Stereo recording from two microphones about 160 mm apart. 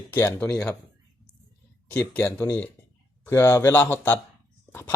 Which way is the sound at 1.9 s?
10° left (ahead or behind).